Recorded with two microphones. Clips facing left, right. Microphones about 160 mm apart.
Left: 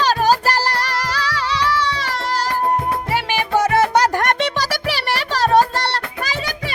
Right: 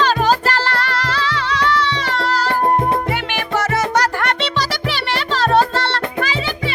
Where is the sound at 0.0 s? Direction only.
40° left (ahead or behind).